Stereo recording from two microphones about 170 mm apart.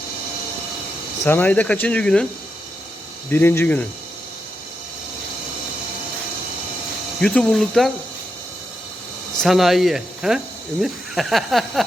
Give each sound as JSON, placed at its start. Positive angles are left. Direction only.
{"t": 1.2, "sound": "speech", "side_deg": 10}
{"t": 3.2, "sound": "speech", "side_deg": 10}
{"t": 7.2, "sound": "speech", "side_deg": 5}
{"t": 9.4, "sound": "speech", "side_deg": 0}